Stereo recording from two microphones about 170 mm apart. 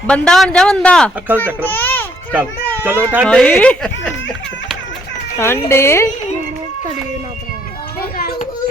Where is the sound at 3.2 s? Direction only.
5° left (ahead or behind).